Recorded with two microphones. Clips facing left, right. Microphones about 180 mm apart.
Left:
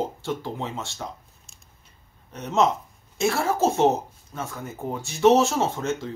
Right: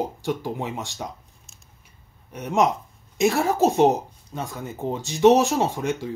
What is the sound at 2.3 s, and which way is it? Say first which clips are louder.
A man's voice: right 1 dB; 10° right (ahead or behind).